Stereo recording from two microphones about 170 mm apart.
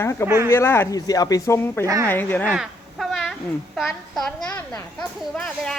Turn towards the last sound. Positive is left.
turn(degrees=5)  # may be behind; listen again after turning